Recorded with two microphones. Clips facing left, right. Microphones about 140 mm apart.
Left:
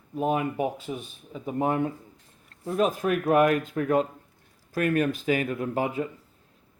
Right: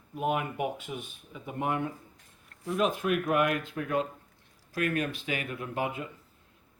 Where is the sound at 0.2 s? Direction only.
35° left (ahead or behind).